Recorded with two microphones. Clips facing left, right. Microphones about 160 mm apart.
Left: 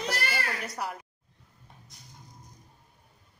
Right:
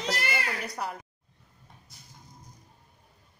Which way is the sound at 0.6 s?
Centre (ahead or behind).